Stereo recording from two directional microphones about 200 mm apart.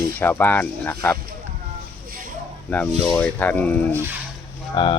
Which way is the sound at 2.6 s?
10° left (ahead or behind).